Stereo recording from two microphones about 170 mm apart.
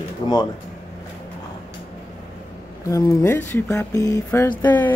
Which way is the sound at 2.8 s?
20° left (ahead or behind).